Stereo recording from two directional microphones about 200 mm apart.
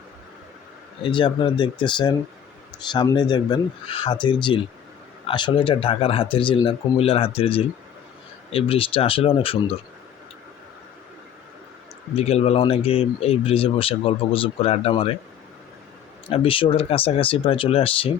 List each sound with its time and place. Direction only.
1.0 s a man's voice: 25° left (ahead or behind)
12.1 s a man's voice: 30° left (ahead or behind)
16.3 s a man's voice: 25° left (ahead or behind)